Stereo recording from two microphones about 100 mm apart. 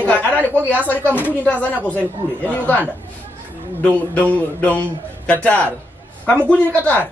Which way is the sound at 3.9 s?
15° left (ahead or behind).